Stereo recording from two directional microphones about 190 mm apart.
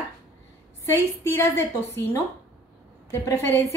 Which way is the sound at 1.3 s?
15° left (ahead or behind).